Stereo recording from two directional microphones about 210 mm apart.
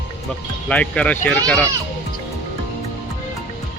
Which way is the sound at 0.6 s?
5° left (ahead or behind).